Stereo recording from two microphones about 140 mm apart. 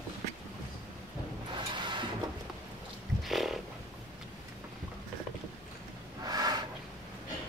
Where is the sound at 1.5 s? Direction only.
35° right (ahead or behind).